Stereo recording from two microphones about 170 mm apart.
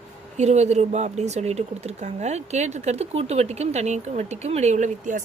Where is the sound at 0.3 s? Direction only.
40° right (ahead or behind).